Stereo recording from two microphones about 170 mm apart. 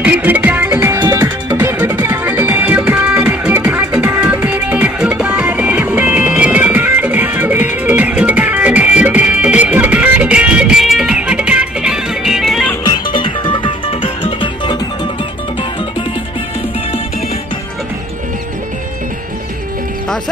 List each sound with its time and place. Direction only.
0.0 s music: 10° right (ahead or behind)
12.8 s music: 25° left (ahead or behind)